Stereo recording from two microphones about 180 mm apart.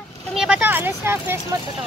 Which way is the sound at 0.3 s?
5° right (ahead or behind).